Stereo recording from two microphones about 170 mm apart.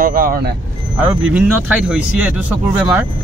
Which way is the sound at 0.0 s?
55° right (ahead or behind).